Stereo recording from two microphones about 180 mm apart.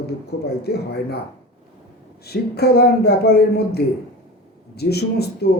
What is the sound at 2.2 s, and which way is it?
Speech, 60° left (ahead or behind).